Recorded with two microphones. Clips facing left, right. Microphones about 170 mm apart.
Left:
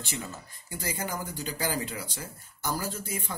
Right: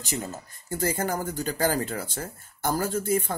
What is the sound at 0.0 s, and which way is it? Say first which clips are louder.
Speech: right 5 dB; 40° right (ahead or behind).